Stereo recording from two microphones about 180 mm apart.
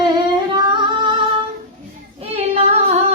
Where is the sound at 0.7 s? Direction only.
25° right (ahead or behind).